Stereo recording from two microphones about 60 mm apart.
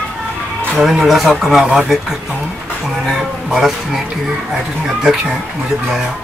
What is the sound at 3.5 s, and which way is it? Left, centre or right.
Speech, centre.